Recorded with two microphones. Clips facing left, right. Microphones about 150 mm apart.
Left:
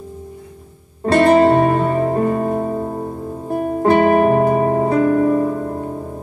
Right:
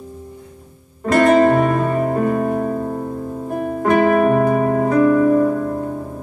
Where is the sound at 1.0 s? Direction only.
30° left (ahead or behind).